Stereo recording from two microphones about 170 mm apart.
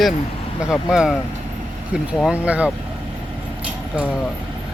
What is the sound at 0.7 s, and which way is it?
Speech, 5° right (ahead or behind).